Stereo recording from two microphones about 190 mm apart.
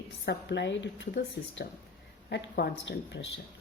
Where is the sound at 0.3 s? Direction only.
65° left (ahead or behind).